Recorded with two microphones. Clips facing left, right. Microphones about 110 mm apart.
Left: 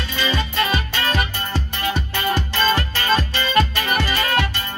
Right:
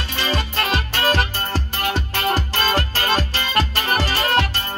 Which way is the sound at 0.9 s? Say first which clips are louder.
Right 2 dB; 35° right (ahead or behind).